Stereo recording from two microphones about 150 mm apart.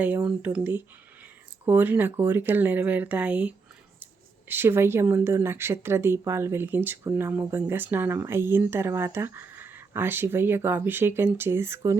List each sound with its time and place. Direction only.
0.3 s speech: 10° right (ahead or behind)